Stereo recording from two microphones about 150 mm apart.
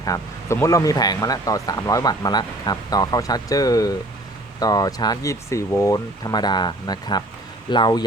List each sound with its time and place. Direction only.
0.0 s speech: 20° left (ahead or behind)